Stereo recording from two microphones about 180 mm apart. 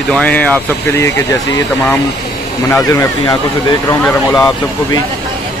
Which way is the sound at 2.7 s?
15° left (ahead or behind).